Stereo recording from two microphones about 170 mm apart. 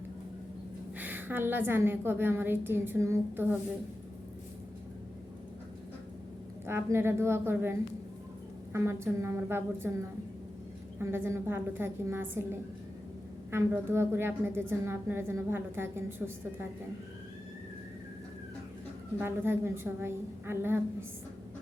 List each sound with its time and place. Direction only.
0.9 s a woman's voice: 10° right (ahead or behind)
6.7 s a woman's voice: 15° right (ahead or behind)
11.0 s a woman's voice: 15° right (ahead or behind)
19.2 s a woman's voice: 15° right (ahead or behind)